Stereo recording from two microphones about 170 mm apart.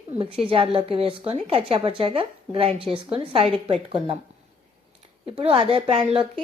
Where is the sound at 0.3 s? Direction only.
30° right (ahead or behind).